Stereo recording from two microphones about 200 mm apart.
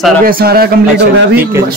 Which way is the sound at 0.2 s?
50° right (ahead or behind).